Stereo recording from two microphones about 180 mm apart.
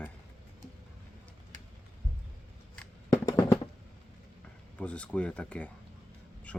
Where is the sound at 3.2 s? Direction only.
25° left (ahead or behind).